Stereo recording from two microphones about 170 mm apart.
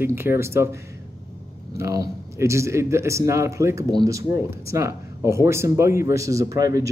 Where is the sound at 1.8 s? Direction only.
20° right (ahead or behind).